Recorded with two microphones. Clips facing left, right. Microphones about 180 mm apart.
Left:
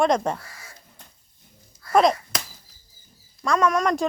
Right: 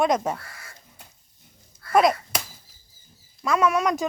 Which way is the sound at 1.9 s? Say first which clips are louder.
Left 1 dB; 5° right (ahead or behind).